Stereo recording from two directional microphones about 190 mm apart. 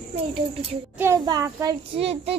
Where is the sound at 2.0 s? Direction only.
30° right (ahead or behind).